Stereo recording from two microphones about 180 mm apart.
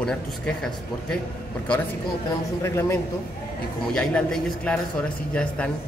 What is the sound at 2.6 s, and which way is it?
Speech, 15° left (ahead or behind).